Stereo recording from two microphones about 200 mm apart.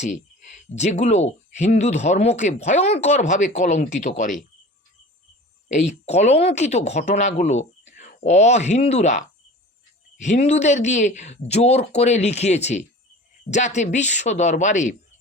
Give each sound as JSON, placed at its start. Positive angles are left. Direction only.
{"t": 0.0, "sound": "speech", "side_deg": 35}
{"t": 5.6, "sound": "speech", "side_deg": 35}